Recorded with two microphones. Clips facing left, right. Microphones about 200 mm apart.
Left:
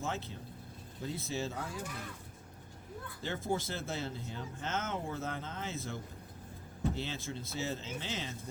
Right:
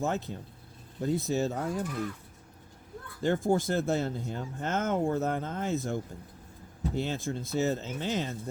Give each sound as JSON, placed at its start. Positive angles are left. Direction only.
{"t": 0.0, "sound": "speech", "side_deg": -45}
{"t": 3.2, "sound": "speech", "side_deg": -50}